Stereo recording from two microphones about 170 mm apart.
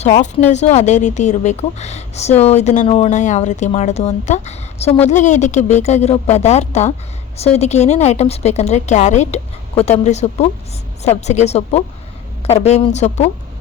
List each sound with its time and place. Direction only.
0.0 s speech: 45° left (ahead or behind)